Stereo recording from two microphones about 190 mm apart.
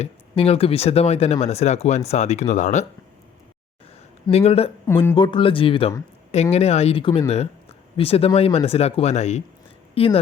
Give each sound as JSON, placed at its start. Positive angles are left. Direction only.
{"t": 0.0, "sound": "speech", "side_deg": 30}
{"t": 4.3, "sound": "speech", "side_deg": 35}
{"t": 4.9, "sound": "speech", "side_deg": 20}